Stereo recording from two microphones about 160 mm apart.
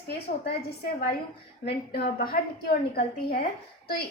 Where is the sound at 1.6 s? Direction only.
90° left.